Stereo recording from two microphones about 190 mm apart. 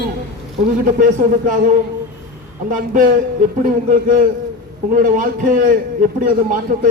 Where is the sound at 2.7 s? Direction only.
45° right (ahead or behind).